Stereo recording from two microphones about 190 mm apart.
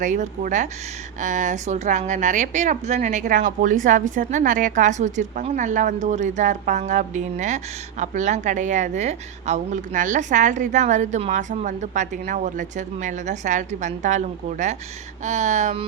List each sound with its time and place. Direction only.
0.0 s a woman's voice: 40° right (ahead or behind)